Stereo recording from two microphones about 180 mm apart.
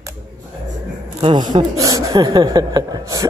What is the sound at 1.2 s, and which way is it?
Speech, 25° right (ahead or behind).